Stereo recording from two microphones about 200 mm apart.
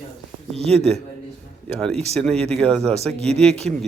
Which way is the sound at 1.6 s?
5° left (ahead or behind).